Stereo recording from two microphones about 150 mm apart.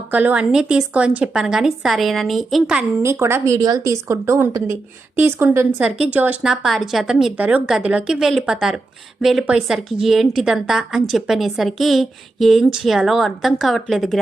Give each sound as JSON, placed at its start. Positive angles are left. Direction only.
{"t": 0.1, "sound": "a woman's voice", "side_deg": -10}
{"t": 3.0, "sound": "a woman's voice", "side_deg": -15}